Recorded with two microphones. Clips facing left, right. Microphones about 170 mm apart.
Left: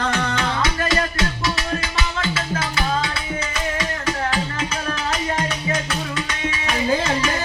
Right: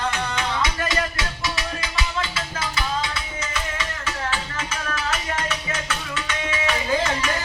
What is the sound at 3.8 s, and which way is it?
Music, 40° left (ahead or behind).